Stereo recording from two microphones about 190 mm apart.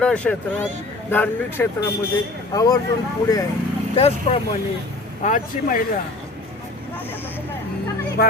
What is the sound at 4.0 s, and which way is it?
Speech, 30° left (ahead or behind).